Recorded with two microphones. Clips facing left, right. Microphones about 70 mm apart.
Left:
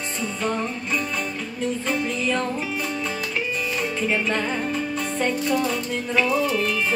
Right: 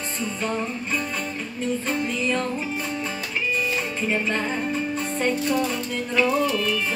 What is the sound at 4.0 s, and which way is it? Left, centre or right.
Music, left.